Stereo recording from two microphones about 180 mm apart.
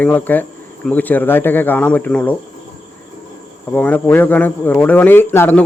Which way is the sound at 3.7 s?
10° left (ahead or behind).